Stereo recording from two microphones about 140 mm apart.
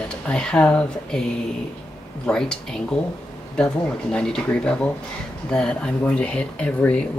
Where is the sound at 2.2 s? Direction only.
5° left (ahead or behind).